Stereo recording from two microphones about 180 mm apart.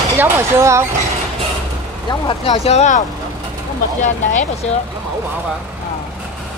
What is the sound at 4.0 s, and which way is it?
Speech, 45° left (ahead or behind).